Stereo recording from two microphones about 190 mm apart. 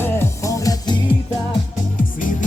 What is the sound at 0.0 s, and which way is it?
Music, 15° left (ahead or behind).